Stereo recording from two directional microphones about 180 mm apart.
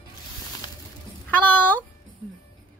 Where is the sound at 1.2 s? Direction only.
10° left (ahead or behind).